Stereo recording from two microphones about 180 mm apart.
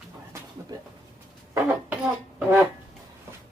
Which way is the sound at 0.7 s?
20° right (ahead or behind).